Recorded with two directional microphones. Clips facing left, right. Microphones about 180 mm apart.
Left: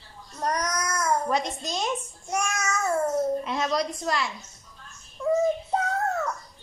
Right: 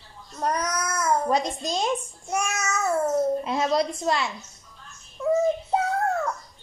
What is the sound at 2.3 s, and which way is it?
Babbling, 5° right (ahead or behind).